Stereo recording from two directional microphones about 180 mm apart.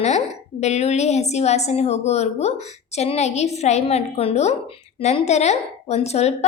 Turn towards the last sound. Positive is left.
turn(degrees=35)  # may be behind; listen again after turning